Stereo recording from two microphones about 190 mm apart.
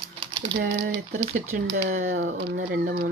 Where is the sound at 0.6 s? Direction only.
60° right (ahead or behind).